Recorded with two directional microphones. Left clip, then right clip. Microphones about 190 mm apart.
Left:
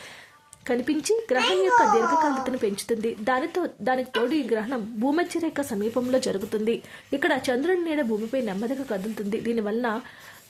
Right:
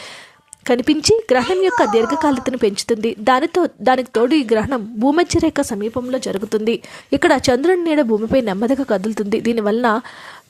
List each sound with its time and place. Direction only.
0.7 s a child's voice: 35° right (ahead or behind)